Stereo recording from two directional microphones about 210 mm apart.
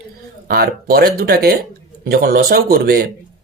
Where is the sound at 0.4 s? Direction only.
45° right (ahead or behind).